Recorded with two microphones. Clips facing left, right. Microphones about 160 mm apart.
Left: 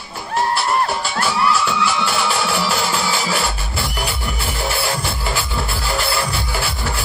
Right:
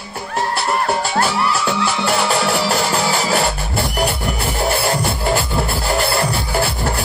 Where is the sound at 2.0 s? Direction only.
40° right (ahead or behind).